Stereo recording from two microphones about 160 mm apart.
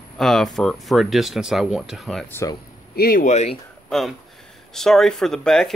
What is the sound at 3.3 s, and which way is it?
Speech, 45° left (ahead or behind).